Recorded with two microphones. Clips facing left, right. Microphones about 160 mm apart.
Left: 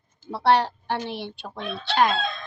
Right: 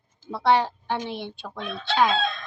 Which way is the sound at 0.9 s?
15° right (ahead or behind).